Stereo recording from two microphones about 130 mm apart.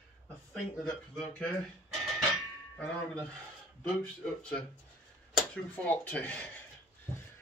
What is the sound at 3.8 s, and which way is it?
Speech, 10° left (ahead or behind).